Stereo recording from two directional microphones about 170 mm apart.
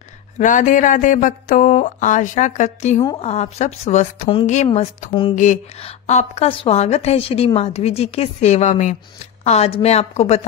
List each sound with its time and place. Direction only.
0.4 s a woman's voice: 45° left (ahead or behind)
4.7 s a woman's voice: 35° left (ahead or behind)
5.3 s a woman's voice: 45° left (ahead or behind)